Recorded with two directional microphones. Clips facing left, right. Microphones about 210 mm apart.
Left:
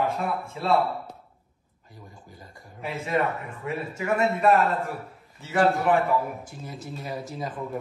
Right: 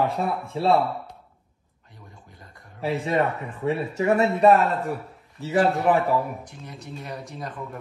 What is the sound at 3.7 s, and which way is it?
Speech, 35° right (ahead or behind).